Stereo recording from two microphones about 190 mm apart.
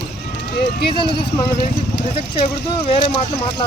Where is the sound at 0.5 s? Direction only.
65° left (ahead or behind).